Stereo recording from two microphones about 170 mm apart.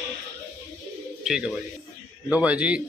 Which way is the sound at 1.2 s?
5° right (ahead or behind).